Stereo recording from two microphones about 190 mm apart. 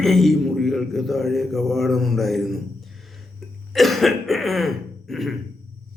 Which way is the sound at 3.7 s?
Centre (ahead or behind).